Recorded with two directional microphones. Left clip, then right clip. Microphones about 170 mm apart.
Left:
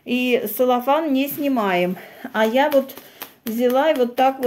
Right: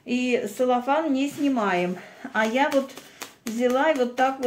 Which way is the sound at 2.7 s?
10° left (ahead or behind).